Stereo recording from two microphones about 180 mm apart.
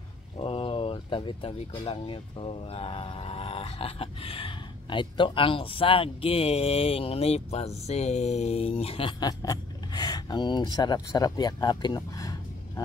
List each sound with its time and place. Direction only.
0.4 s speech: 30° left (ahead or behind)